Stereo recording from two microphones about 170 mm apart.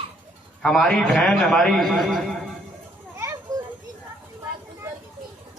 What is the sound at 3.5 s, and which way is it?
Children playing, 20° right (ahead or behind).